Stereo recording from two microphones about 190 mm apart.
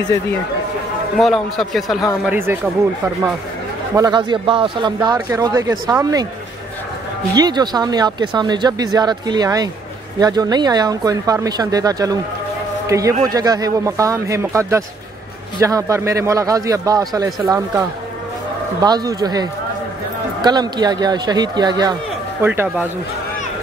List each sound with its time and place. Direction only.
1.1 s a man's voice: centre (ahead or behind)
2.2 s a man's voice: 10° right (ahead or behind)
3.9 s a man's voice: 20° right (ahead or behind)
7.3 s a man's voice: 20° right (ahead or behind)
20.4 s a man's voice: 20° right (ahead or behind)
22.4 s a man's voice: 10° right (ahead or behind)